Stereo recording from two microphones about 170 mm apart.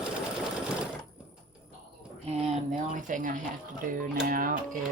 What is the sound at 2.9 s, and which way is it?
Speech, 50° right (ahead or behind).